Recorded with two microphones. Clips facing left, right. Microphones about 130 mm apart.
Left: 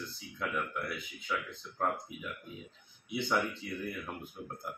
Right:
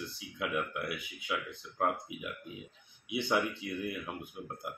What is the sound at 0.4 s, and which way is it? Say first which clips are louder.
Speech: right 1 dB; 10° right (ahead or behind).